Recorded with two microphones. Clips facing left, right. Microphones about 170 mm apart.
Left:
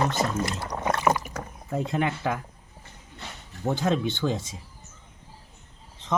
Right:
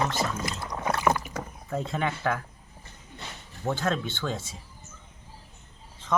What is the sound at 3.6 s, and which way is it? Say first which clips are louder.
Speech: left 3 dB; 15° left (ahead or behind).